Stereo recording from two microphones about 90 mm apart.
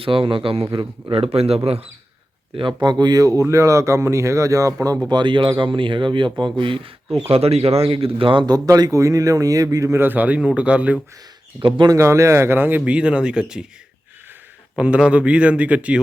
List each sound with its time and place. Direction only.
0.0 s a man's voice: 75° right (ahead or behind)
1.1 s speech: 90° right
2.8 s speech: 50° right (ahead or behind)
5.0 s speech: 60° right (ahead or behind)
8.4 s speech: 45° right (ahead or behind)
10.0 s speech: 20° right (ahead or behind)
11.9 s speech: 35° right (ahead or behind); by 13.7 s 10° right (ahead or behind)
14.8 s speech: 10° right (ahead or behind)